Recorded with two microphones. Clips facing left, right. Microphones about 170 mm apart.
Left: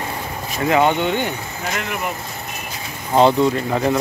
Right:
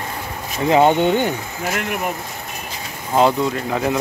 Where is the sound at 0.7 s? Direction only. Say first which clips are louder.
Right 3 dB; 35° right (ahead or behind).